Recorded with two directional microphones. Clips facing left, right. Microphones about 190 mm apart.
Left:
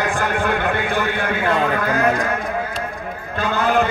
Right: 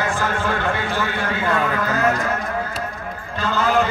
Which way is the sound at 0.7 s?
55° left (ahead or behind).